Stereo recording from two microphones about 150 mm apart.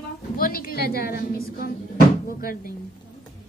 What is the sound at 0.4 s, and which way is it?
A woman's voice, 80° left.